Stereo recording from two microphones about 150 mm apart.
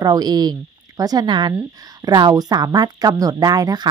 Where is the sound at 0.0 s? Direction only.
25° right (ahead or behind).